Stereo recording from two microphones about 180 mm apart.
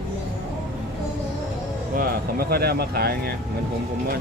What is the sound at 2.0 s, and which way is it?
Speech, 60° right (ahead or behind).